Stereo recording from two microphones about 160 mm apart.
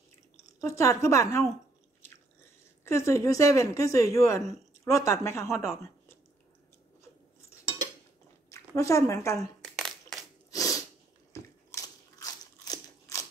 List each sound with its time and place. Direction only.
0.6 s speech: 20° left (ahead or behind)
2.8 s speech: 15° left (ahead or behind)
8.5 s a woman's voice: 20° left (ahead or behind)
9.8 s crushing: centre (ahead or behind)
10.5 s sneeze: 20° left (ahead or behind)
11.3 s crunch: 20° left (ahead or behind)